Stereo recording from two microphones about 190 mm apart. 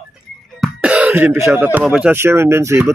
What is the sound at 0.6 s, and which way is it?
Speech, 5° right (ahead or behind).